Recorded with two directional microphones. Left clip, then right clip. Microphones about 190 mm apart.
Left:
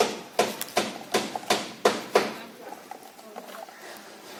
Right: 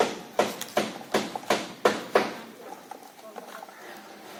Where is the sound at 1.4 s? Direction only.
35° right (ahead or behind).